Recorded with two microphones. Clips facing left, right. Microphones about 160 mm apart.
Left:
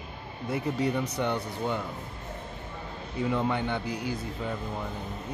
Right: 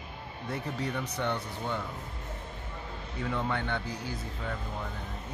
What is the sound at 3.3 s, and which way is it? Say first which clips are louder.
Speech: left 3 dB; 15° left (ahead or behind).